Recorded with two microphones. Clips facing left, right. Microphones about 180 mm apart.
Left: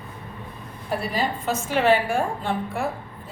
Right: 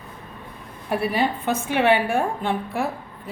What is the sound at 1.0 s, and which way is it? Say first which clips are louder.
A woman's voice: right 4 dB; 60° right (ahead or behind).